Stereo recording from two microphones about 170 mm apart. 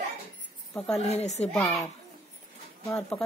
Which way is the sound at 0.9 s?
40° left (ahead or behind).